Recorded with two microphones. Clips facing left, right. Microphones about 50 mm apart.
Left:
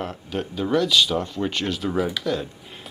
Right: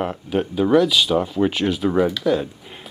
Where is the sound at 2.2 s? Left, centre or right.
Centre.